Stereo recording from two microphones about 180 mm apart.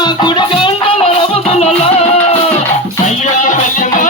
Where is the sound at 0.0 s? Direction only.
25° left (ahead or behind).